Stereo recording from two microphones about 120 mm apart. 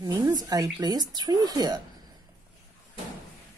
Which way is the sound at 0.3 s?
35° right (ahead or behind).